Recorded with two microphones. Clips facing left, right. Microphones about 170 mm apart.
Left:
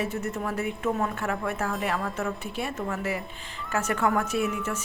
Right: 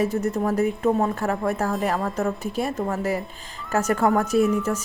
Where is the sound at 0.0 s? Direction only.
35° right (ahead or behind).